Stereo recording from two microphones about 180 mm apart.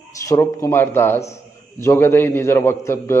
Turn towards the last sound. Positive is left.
turn(degrees=15)  # may be behind; listen again after turning